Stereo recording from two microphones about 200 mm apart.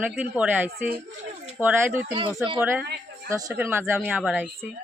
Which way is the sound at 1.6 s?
10° right (ahead or behind).